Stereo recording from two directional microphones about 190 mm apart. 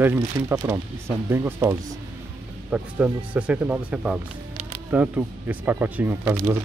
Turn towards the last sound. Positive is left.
turn(degrees=-10)  # may be behind; listen again after turning